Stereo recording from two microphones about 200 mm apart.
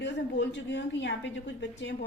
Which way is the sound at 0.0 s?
60° left (ahead or behind).